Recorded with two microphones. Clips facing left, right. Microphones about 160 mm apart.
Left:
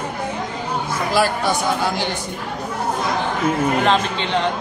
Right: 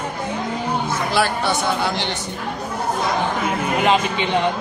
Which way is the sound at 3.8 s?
10° right (ahead or behind).